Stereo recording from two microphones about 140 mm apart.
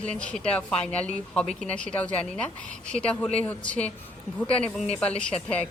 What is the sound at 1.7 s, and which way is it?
Speech, 10° left (ahead or behind).